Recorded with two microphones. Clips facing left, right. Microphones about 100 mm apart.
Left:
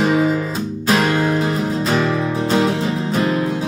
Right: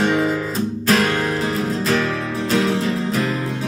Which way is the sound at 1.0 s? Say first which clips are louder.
Left 3 dB; 25° left (ahead or behind).